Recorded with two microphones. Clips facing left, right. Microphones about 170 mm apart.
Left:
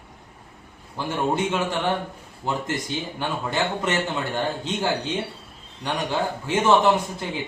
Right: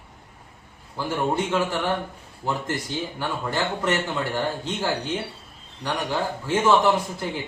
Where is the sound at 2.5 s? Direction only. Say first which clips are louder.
Left 1 dB; 20° left (ahead or behind).